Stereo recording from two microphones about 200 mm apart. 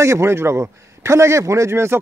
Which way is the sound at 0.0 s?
15° right (ahead or behind).